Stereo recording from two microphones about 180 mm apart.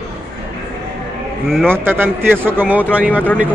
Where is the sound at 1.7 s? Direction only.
10° right (ahead or behind).